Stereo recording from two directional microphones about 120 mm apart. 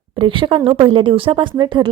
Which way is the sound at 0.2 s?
45° right (ahead or behind).